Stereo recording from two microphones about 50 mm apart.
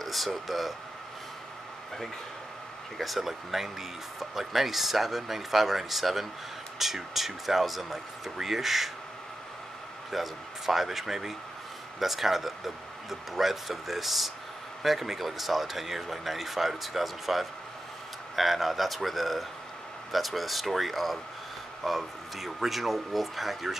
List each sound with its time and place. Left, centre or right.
0.0 s speech: centre
3.0 s speech: centre
10.1 s speech: centre